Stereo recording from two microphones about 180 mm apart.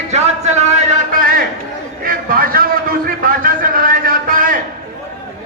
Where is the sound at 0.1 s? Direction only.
40° right (ahead or behind).